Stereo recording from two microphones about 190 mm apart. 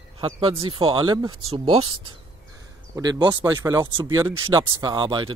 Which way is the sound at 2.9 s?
20° right (ahead or behind).